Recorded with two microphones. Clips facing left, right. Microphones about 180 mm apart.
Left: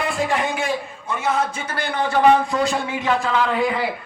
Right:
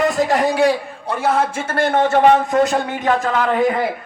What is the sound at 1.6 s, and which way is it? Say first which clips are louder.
A man's voice: right 7 dB; 50° right (ahead or behind).